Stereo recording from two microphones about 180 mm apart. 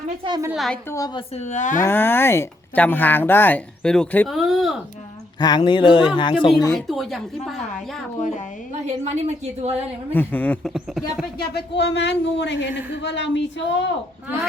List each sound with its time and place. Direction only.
0.3 s a woman's voice: 20° right (ahead or behind)
0.5 s speech: centre (ahead or behind)
0.9 s speech: 20° left (ahead or behind)
1.4 s speech: 40° left (ahead or behind)
1.8 s speech: 10° left (ahead or behind)
5.4 s speech: 25° left (ahead or behind)
6.7 s speech: centre (ahead or behind)
8.7 s a woman's voice: 40° right (ahead or behind)
10.1 s speech: 10° left (ahead or behind)
10.8 s speech: centre (ahead or behind)
11.5 s speech: 75° left (ahead or behind)